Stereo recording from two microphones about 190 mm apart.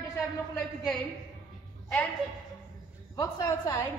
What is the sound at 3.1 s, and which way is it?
Speech, 15° left (ahead or behind).